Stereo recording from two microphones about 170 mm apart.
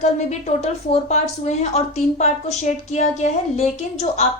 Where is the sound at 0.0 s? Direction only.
40° left (ahead or behind).